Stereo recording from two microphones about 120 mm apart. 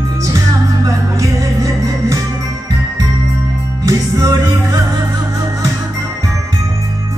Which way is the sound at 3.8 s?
30° right (ahead or behind).